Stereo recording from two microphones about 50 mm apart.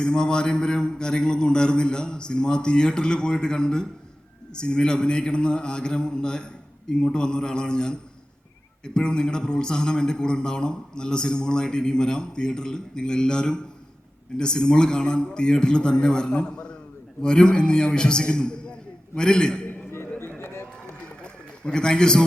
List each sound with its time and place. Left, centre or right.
0.0 s a man's voice: centre
19.9 s a sound: left
20.4 s run: left
21.6 s a man's voice: centre